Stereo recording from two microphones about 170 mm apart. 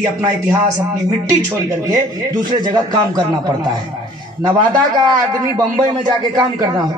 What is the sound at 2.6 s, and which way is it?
Speech, 25° right (ahead or behind).